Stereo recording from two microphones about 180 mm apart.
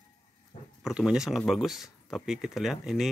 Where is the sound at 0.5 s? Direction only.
35° left (ahead or behind).